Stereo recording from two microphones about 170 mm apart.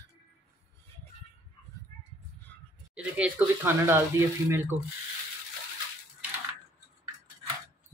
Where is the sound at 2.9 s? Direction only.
10° right (ahead or behind).